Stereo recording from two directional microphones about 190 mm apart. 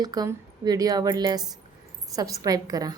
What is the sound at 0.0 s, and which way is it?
A woman's voice, 20° right (ahead or behind).